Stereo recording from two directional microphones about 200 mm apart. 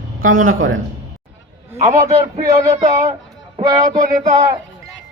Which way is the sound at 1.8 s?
15° right (ahead or behind).